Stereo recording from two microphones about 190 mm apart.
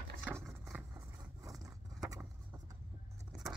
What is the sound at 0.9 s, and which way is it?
Vehicle, 15° right (ahead or behind).